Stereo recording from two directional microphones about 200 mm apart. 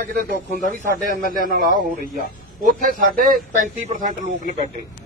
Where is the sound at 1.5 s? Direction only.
45° right (ahead or behind).